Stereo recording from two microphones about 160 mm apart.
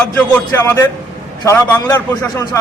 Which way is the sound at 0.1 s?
10° left (ahead or behind).